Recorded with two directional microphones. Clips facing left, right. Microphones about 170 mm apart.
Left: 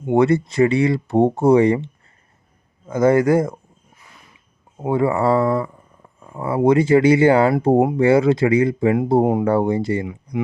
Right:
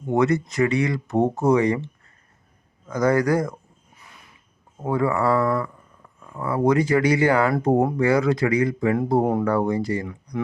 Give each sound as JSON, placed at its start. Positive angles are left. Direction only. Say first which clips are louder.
{"t": 0.0, "sound": "speech", "louder": "left 4 dB", "side_deg": 30}
{"t": 4.9, "sound": "speech", "louder": "left 4 dB", "side_deg": 25}